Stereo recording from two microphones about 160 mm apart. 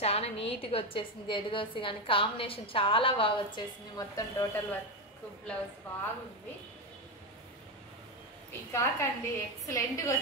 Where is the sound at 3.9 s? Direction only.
20° left (ahead or behind).